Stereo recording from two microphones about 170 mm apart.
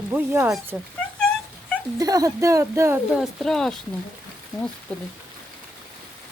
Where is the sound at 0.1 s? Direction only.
10° right (ahead or behind).